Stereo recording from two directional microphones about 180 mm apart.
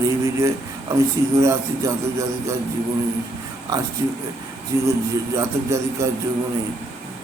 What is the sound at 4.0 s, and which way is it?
A man's voice, 20° right (ahead or behind).